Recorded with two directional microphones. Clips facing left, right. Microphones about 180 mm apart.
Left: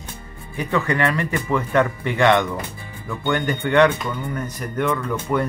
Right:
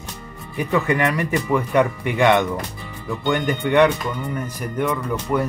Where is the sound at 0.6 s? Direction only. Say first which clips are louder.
Right 1 dB; 15° right (ahead or behind).